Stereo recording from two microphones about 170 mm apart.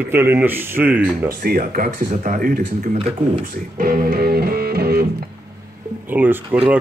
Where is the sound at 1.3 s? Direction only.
60° right (ahead or behind).